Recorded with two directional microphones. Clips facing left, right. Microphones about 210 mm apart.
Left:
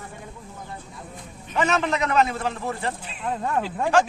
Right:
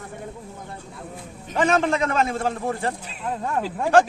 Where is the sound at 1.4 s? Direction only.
45° right (ahead or behind).